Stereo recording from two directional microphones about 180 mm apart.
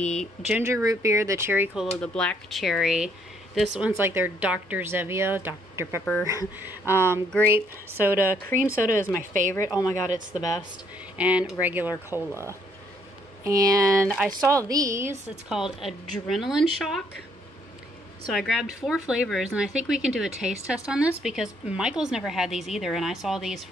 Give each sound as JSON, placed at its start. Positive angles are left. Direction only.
{"t": 0.0, "sound": "a woman's voice", "side_deg": 5}
{"t": 0.5, "sound": "speech", "side_deg": -10}
{"t": 2.0, "sound": "a woman's voice", "side_deg": 5}
{"t": 8.0, "sound": "a woman's voice", "side_deg": 15}
{"t": 11.1, "sound": "speech", "side_deg": -5}
{"t": 13.4, "sound": "speech", "side_deg": -20}
{"t": 15.4, "sound": "a woman's voice", "side_deg": -5}
{"t": 18.3, "sound": "a woman's voice", "side_deg": 0}